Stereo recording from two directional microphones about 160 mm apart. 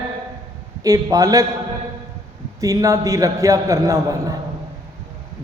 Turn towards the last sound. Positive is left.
turn(degrees=-20)  # may be behind; listen again after turning